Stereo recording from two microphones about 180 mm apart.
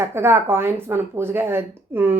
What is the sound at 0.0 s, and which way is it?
Speech, 15° right (ahead or behind).